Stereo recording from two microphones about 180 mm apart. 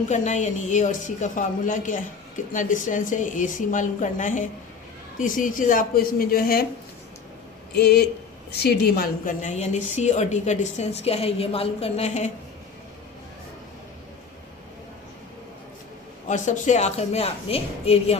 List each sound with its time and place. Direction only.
0.1 s a woman's voice: 40° left (ahead or behind)
7.8 s a woman's voice: 65° left (ahead or behind); by 12.3 s 40° left (ahead or behind)
16.2 s a woman's voice: 40° left (ahead or behind)